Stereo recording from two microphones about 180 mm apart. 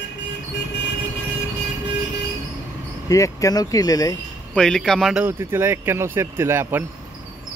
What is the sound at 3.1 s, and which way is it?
Speech, 20° left (ahead or behind).